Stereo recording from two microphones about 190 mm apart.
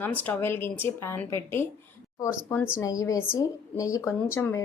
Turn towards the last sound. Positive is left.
turn(degrees=10)  # may be behind; listen again after turning